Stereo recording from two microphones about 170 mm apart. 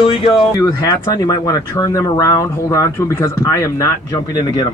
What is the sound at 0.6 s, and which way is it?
Speech, 20° left (ahead or behind).